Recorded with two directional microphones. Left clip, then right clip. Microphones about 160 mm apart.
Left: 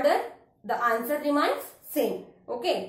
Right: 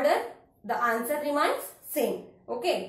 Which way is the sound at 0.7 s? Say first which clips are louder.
Left 1 dB; 20° left (ahead or behind).